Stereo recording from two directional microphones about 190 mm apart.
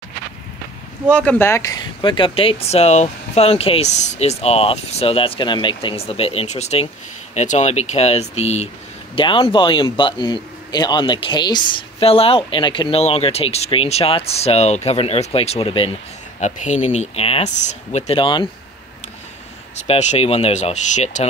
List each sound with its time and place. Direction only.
1.1 s a man's voice: 5° left (ahead or behind); by 15.9 s 30° left (ahead or behind)
16.3 s speech: 40° left (ahead or behind)
19.7 s speech: 35° left (ahead or behind)